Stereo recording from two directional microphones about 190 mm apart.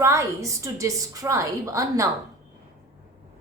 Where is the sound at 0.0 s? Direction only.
15° right (ahead or behind).